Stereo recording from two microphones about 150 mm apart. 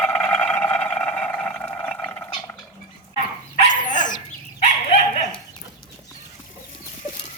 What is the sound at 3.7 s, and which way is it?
Dog, 60° left (ahead or behind).